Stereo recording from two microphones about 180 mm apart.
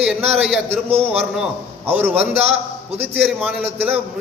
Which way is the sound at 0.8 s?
35° right (ahead or behind).